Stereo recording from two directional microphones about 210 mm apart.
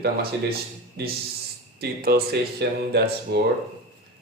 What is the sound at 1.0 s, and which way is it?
Speech, 50° right (ahead or behind).